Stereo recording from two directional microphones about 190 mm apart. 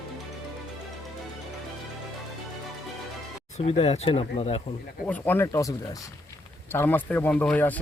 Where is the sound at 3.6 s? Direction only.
30° left (ahead or behind).